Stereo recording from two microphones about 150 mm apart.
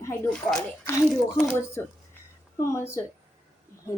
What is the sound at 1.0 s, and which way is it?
Speech, centre (ahead or behind).